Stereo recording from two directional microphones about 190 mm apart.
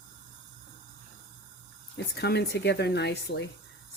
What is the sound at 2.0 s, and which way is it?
Speech, 60° left (ahead or behind).